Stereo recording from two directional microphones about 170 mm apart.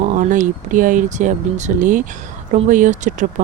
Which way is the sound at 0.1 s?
50° right (ahead or behind).